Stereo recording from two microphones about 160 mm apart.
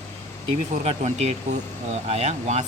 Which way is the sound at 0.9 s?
40° right (ahead or behind).